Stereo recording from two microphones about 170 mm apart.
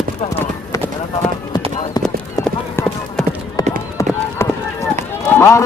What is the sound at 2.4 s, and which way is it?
Clip-clop, 5° left (ahead or behind).